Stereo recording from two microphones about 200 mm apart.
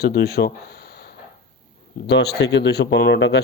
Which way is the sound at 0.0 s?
50° left (ahead or behind).